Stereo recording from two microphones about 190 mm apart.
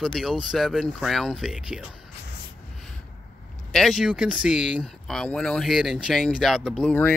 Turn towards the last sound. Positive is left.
turn(degrees=10)  # may be behind; listen again after turning